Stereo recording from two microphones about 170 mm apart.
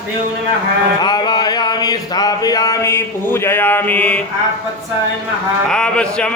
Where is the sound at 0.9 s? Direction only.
25° left (ahead or behind); by 4.2 s 10° left (ahead or behind).